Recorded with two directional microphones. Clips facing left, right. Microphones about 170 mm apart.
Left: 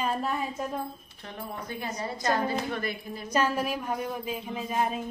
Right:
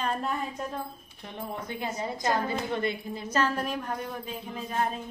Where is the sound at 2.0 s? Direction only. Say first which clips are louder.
Left 1 dB; 20° right (ahead or behind).